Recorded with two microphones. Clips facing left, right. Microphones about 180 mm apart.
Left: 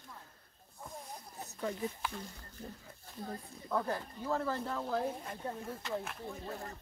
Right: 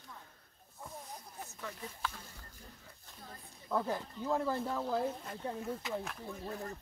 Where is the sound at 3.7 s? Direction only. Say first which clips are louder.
Even; 10° right (ahead or behind).